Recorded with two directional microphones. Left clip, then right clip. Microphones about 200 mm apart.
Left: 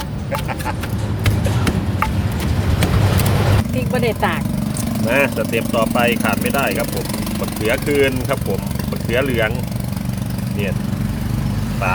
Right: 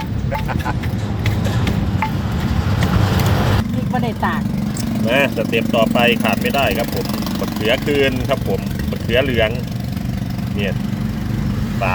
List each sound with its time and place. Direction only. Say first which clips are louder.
3.9 s vehicle: left 2 dB; 45° left (ahead or behind)
5.0 s speech: even; 5° left (ahead or behind)